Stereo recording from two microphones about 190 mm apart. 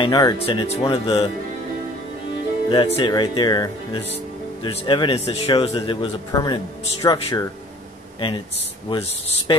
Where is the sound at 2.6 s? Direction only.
30° left (ahead or behind).